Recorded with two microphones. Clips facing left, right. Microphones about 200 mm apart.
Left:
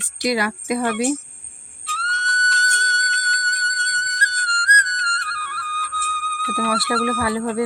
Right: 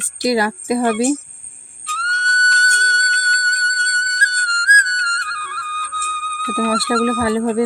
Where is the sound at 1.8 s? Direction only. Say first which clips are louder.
Right 2 dB; 45° right (ahead or behind).